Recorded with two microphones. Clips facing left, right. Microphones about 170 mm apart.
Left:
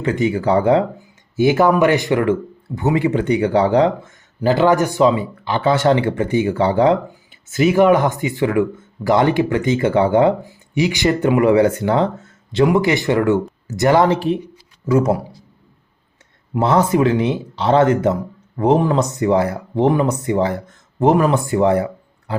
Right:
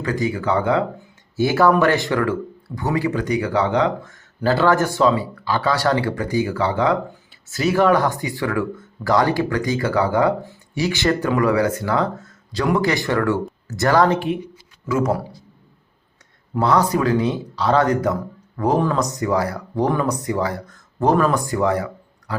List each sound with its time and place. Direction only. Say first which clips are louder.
0.0 s speech: left 4 dB; 25° left (ahead or behind)
1.4 s speech: left 3 dB; 20° left (ahead or behind)
4.4 s speech: left 3 dB; 15° left (ahead or behind)
7.4 s speech: left 4 dB; 20° left (ahead or behind)
16.6 s speech: left 3 dB; 25° left (ahead or behind)